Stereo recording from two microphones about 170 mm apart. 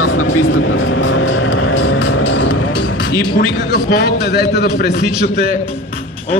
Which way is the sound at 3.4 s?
75° left (ahead or behind).